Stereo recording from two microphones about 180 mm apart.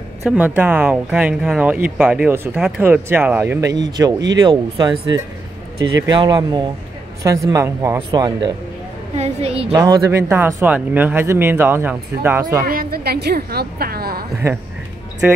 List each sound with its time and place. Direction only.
0.2 s speech: 5° right (ahead or behind)
3.7 s a woman's voice: 25° right (ahead or behind)
9.1 s a woman's voice: 35° right (ahead or behind)
9.7 s speech: 20° right (ahead or behind)
12.6 s a woman's voice: 55° right (ahead or behind)
14.4 s speech: 15° right (ahead or behind)